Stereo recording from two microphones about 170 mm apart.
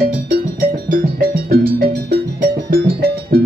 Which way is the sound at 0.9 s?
60° right (ahead or behind).